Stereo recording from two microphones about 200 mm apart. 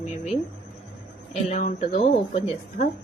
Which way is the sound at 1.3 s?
35° left (ahead or behind).